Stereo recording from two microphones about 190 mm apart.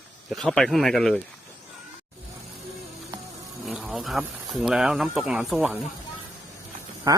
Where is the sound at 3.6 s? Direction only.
5° right (ahead or behind).